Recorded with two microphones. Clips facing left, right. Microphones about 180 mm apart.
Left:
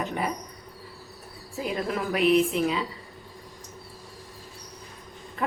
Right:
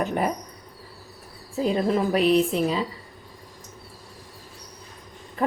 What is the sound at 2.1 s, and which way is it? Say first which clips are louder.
Speech: left 1 dB; 35° right (ahead or behind).